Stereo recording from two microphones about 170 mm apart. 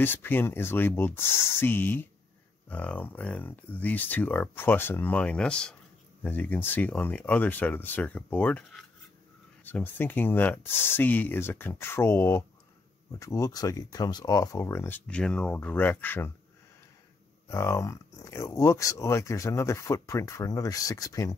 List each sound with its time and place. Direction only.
0.0 s speech: 10° left (ahead or behind)
17.5 s speech: 15° left (ahead or behind)